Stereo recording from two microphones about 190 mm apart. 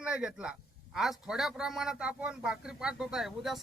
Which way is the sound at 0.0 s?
5° right (ahead or behind).